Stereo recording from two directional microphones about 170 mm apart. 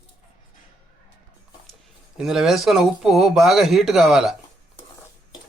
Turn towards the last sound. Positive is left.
turn(degrees=0)  # may be behind; listen again after turning